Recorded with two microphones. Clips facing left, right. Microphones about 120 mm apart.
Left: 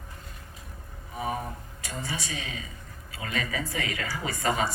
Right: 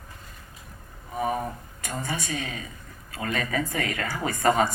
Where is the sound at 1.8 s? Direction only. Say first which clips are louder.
Right 4 dB; 50° right (ahead or behind).